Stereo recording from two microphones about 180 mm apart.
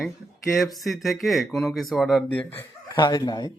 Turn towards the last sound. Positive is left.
turn(degrees=25)  # may be behind; listen again after turning